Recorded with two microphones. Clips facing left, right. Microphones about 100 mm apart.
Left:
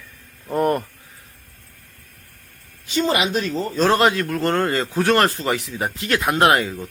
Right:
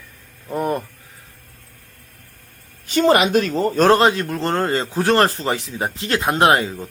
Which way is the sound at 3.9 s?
25° right (ahead or behind).